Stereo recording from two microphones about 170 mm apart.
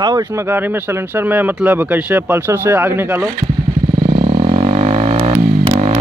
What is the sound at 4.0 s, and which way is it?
Vehicle, 30° right (ahead or behind).